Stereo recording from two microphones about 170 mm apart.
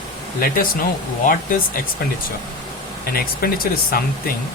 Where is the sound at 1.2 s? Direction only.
55° left (ahead or behind).